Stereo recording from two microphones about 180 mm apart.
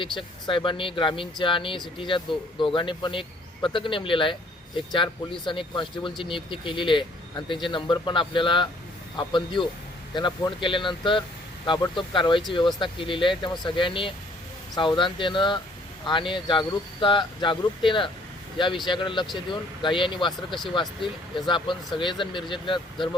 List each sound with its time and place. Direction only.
0.2 s speech: 30° left (ahead or behind)